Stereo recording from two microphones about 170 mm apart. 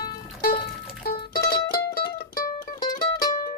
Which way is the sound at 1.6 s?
60° left (ahead or behind).